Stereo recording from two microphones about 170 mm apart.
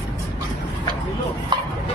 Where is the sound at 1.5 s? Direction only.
25° right (ahead or behind).